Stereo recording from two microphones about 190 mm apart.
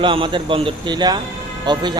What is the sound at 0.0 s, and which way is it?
A man's voice, 25° right (ahead or behind).